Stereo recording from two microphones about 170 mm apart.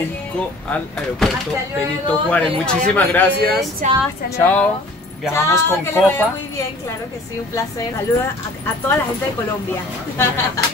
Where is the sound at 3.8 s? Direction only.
45° right (ahead or behind).